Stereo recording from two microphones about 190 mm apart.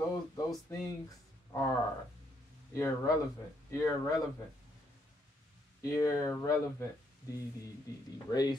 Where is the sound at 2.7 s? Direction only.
15° left (ahead or behind).